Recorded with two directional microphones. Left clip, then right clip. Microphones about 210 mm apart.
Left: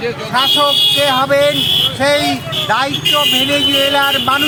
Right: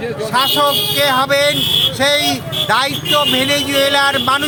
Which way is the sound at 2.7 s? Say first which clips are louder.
Left 1 dB; 20° right (ahead or behind).